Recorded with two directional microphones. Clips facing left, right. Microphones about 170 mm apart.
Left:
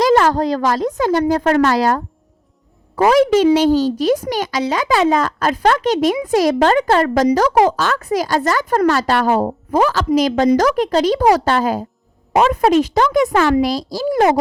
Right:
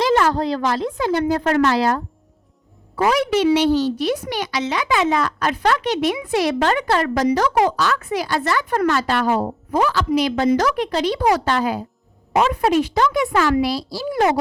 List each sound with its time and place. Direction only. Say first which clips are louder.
0.0 s a woman's voice: left 4 dB; 45° left (ahead or behind)